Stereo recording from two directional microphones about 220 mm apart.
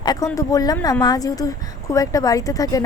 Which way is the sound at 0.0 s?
20° left (ahead or behind).